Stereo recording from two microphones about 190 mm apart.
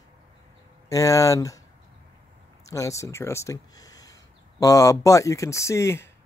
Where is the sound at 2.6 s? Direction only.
15° left (ahead or behind).